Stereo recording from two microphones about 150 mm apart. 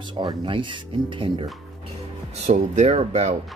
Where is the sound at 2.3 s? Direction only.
45° right (ahead or behind).